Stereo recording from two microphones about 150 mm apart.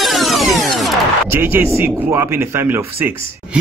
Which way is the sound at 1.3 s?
15° right (ahead or behind).